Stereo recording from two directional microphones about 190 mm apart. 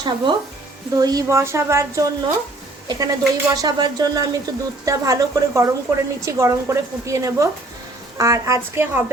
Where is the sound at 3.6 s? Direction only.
20° right (ahead or behind).